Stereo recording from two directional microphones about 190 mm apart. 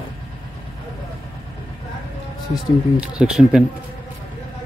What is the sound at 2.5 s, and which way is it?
Speech, 5° right (ahead or behind).